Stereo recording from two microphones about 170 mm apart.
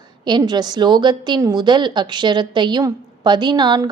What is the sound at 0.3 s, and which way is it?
A woman's voice, 25° right (ahead or behind).